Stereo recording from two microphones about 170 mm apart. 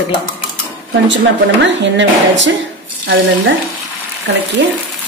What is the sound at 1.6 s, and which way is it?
Speech, 90° right.